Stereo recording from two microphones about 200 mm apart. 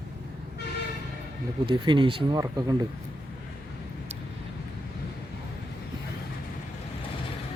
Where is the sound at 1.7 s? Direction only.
25° right (ahead or behind).